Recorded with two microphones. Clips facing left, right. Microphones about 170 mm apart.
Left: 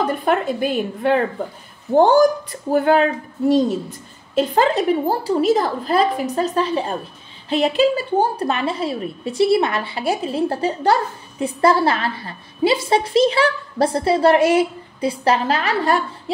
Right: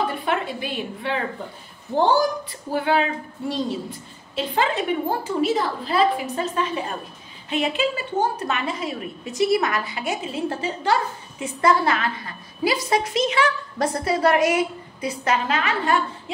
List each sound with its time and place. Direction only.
0.0 s a woman's voice: 40° left (ahead or behind)